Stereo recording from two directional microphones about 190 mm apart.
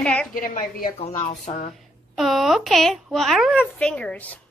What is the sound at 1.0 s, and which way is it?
Wail, 35° left (ahead or behind).